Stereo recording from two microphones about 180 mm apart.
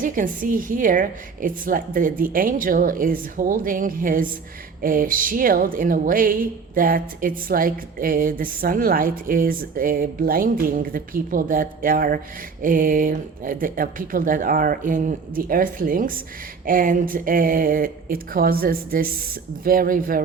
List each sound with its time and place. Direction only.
0.0 s speech: 50° right (ahead or behind)